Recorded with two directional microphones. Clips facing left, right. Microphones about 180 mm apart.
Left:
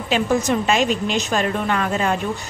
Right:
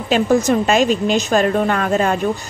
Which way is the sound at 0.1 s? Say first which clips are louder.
Right 4 dB; 45° right (ahead or behind).